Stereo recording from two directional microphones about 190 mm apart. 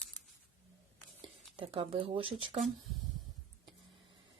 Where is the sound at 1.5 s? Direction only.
30° right (ahead or behind).